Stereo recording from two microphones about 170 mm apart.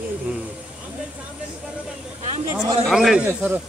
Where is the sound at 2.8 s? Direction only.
Centre (ahead or behind).